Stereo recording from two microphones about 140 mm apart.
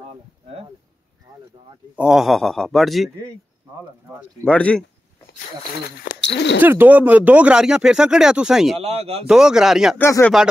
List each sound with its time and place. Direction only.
2.0 s speech: 5° right (ahead or behind)
4.5 s speech: 10° left (ahead or behind)
6.1 s a sound: 90° left
6.6 s speech: 15° right (ahead or behind)
8.7 s speech: 45° right (ahead or behind)
9.3 s speech: 5° right (ahead or behind)
9.9 s speech: 15° left (ahead or behind)